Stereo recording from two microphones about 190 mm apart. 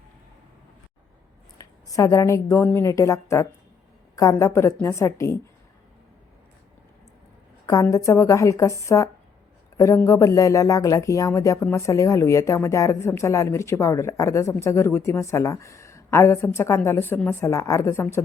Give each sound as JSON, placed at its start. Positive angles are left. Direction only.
{"t": 1.5, "sound": "a woman's voice", "side_deg": 20}
{"t": 7.7, "sound": "speech", "side_deg": 15}